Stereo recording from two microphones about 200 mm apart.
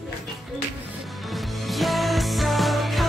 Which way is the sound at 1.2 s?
Centre (ahead or behind).